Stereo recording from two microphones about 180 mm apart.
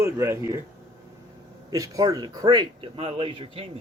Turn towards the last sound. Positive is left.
turn(degrees=-30)  # may be behind; listen again after turning